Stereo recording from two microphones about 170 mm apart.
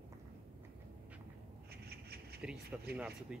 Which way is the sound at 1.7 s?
70° right (ahead or behind).